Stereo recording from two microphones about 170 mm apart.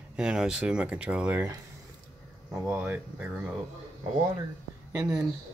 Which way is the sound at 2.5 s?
10° right (ahead or behind).